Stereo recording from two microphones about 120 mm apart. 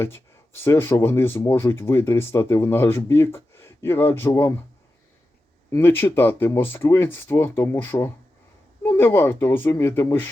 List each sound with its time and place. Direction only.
0.0 s speech: 20° left (ahead or behind)
5.7 s speech: 20° left (ahead or behind)